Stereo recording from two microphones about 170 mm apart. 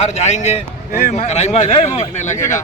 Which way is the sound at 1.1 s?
40° left (ahead or behind).